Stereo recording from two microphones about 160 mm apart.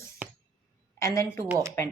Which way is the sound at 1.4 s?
20° right (ahead or behind).